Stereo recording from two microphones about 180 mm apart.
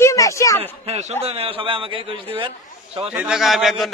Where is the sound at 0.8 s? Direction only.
35° right (ahead or behind).